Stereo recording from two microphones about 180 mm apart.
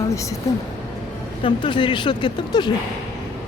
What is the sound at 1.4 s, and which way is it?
Speech, 25° left (ahead or behind).